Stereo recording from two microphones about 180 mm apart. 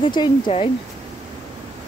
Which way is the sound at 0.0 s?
25° left (ahead or behind).